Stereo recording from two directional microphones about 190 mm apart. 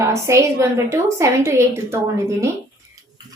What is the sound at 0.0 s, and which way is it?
A woman's voice, 15° right (ahead or behind).